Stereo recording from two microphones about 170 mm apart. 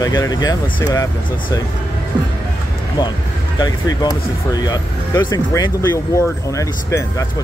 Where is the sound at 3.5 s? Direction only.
25° left (ahead or behind).